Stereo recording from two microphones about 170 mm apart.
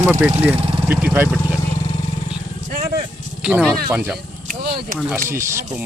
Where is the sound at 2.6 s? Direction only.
55° right (ahead or behind).